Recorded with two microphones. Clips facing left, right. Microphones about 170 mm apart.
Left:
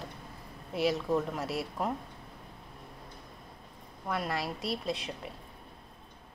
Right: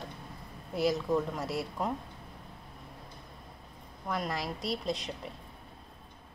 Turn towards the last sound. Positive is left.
turn(degrees=5)  # may be behind; listen again after turning